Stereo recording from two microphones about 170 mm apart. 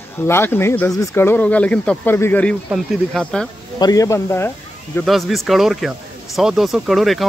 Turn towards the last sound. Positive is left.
turn(degrees=0)  # may be behind; listen again after turning